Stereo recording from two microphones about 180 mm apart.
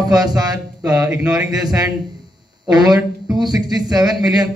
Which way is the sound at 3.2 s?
20° right (ahead or behind).